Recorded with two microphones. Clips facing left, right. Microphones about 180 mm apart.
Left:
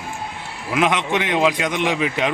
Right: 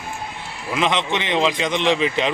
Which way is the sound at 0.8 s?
10° left (ahead or behind).